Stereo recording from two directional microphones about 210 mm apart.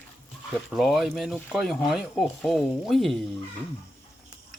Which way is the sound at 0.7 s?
Centre (ahead or behind).